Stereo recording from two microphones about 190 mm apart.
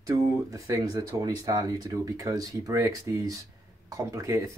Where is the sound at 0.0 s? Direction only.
15° right (ahead or behind).